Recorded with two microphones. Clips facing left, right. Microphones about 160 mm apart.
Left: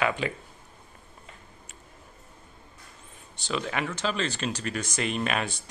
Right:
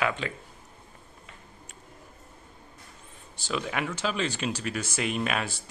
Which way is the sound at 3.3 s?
5° right (ahead or behind).